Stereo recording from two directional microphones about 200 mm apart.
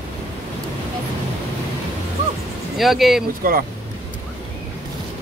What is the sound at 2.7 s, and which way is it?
Speech, centre (ahead or behind).